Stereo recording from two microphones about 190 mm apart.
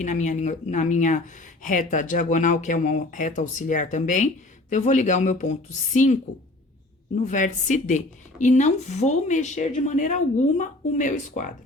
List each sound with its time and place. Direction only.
0.0 s a woman's voice: 40° left (ahead or behind)
7.2 s a woman's voice: 40° left (ahead or behind)